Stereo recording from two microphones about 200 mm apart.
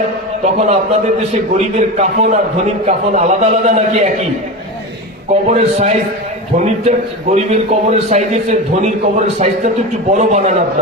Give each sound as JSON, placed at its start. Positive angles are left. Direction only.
{"t": 0.4, "sound": "a man's voice", "side_deg": -35}
{"t": 5.5, "sound": "a man's voice", "side_deg": -35}